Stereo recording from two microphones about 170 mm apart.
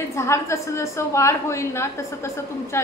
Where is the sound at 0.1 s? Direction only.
15° left (ahead or behind).